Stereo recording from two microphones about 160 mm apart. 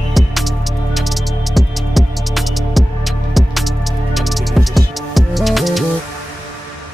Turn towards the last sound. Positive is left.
turn(degrees=0)  # may be behind; listen again after turning